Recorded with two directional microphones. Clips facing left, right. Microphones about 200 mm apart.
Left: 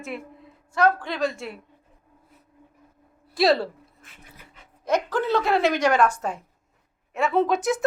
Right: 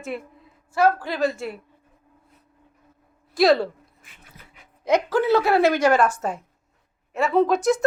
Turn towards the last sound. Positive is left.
turn(degrees=0)  # may be behind; listen again after turning